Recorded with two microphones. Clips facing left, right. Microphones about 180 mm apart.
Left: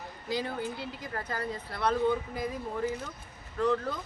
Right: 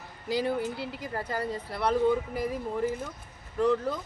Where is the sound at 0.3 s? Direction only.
35° right (ahead or behind).